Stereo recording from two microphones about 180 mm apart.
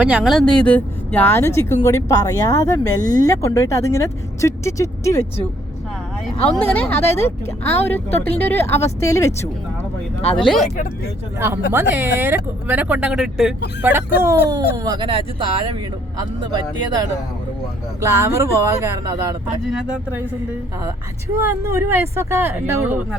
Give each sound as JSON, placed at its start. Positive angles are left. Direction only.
{"t": 0.0, "sound": "speech", "side_deg": -5}
{"t": 6.5, "sound": "speech", "side_deg": 10}
{"t": 10.3, "sound": "speech", "side_deg": 0}
{"t": 11.3, "sound": "speech", "side_deg": -15}
{"t": 18.0, "sound": "speech", "side_deg": -15}
{"t": 19.7, "sound": "speech", "side_deg": -5}
{"t": 21.3, "sound": "speech", "side_deg": -15}